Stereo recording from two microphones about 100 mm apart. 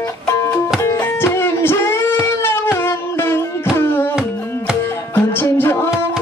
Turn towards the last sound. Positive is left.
turn(degrees=25)  # may be behind; listen again after turning